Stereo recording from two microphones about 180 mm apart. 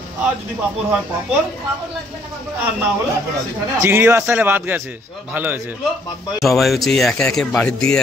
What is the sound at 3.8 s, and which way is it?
A man's voice, 15° right (ahead or behind).